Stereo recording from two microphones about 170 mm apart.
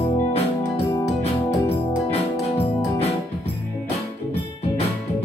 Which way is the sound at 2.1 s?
35° left (ahead or behind).